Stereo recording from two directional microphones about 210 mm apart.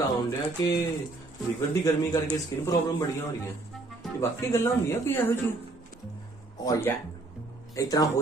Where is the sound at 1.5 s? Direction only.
15° left (ahead or behind).